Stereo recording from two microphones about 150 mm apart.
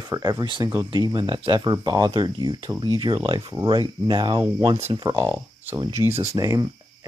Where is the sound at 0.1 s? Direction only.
25° right (ahead or behind).